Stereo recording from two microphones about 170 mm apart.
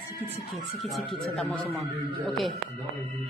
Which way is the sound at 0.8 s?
Centre (ahead or behind).